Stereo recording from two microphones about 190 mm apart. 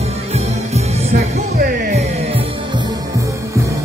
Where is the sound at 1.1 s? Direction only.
50° right (ahead or behind).